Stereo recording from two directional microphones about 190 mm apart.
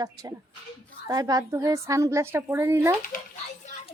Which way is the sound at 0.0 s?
20° right (ahead or behind).